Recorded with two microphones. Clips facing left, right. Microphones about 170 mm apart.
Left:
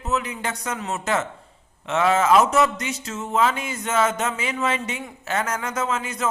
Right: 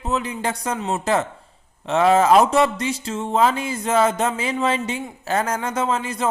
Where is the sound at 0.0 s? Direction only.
30° right (ahead or behind).